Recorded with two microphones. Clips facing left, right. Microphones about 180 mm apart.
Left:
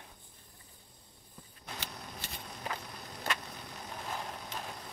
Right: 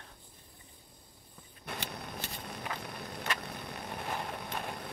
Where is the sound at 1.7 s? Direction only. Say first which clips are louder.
Right 4 dB; 60° right (ahead or behind).